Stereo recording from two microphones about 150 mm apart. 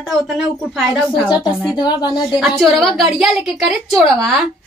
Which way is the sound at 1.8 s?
30° left (ahead or behind).